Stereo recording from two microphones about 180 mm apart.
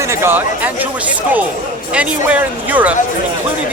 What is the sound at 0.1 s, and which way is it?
Speech, 15° right (ahead or behind).